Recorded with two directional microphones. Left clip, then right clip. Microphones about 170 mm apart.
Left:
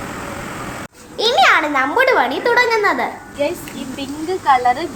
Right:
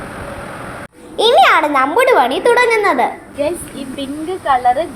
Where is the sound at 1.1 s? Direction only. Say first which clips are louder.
Right 3 dB; 10° right (ahead or behind).